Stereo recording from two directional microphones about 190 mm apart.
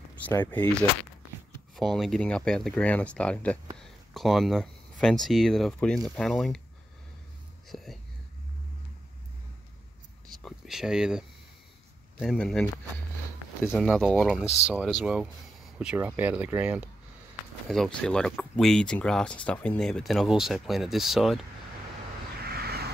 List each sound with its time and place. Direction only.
0.2 s speech: 10° left (ahead or behind)
3.8 s a sound: centre (ahead or behind)
5.0 s speech: centre (ahead or behind)
7.7 s speech: centre (ahead or behind)
10.3 s speech: centre (ahead or behind)
14.4 s speech: 35° left (ahead or behind)
14.7 s speech: centre (ahead or behind)
17.6 s speech: 5° left (ahead or behind)
22.5 s vehicle: 55° right (ahead or behind)